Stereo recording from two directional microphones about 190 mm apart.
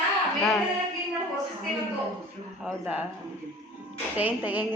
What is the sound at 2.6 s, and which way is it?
Speech, 10° right (ahead or behind).